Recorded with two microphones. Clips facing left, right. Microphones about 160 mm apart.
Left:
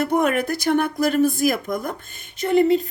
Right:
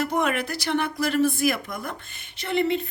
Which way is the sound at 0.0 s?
50° left (ahead or behind).